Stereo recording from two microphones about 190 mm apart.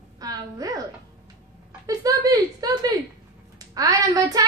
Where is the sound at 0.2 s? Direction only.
20° right (ahead or behind).